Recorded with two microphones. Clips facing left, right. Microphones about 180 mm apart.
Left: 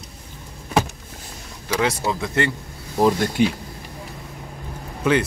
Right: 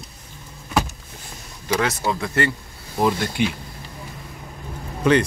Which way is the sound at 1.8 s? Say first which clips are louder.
Left 2 dB; 15° left (ahead or behind).